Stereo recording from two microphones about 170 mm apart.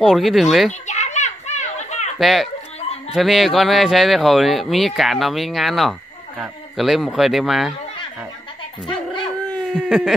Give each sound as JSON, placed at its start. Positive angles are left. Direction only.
{"t": 0.0, "sound": "speech", "side_deg": 0}
{"t": 0.8, "sound": "children playing", "side_deg": 45}
{"t": 2.1, "sound": "speech", "side_deg": 0}
{"t": 8.8, "sound": "dog", "side_deg": 30}
{"t": 9.5, "sound": "a sound", "side_deg": 0}